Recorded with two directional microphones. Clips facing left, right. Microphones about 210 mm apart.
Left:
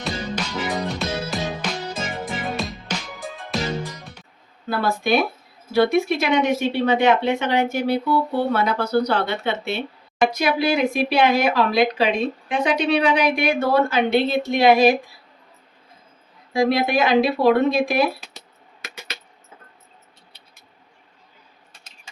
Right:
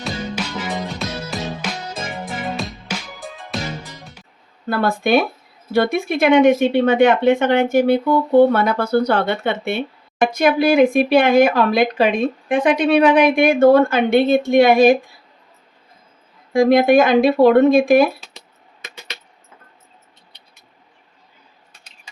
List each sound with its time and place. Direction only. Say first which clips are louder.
0.9 s music: left 1 dB; centre (ahead or behind)
4.7 s speech: right 4 dB; 55° right (ahead or behind)
16.5 s speech: right 7 dB; 50° right (ahead or behind)